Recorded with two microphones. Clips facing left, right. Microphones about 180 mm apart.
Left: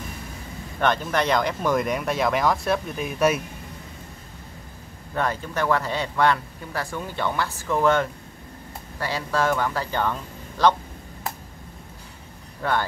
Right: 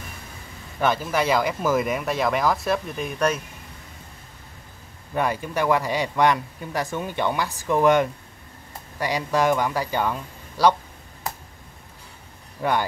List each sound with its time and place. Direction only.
0.7 s speech: 5° right (ahead or behind)
5.1 s speech: 15° right (ahead or behind)
12.6 s speech: 15° right (ahead or behind)